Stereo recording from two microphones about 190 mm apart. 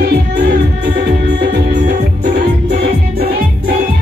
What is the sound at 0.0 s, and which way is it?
Music, 55° right (ahead or behind).